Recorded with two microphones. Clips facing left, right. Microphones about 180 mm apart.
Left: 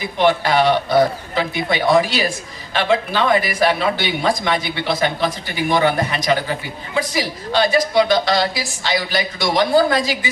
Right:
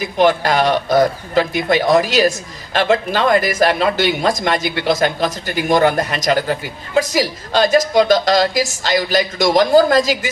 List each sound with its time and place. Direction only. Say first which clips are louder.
0.2 s speech: right 1 dB; 45° right (ahead or behind)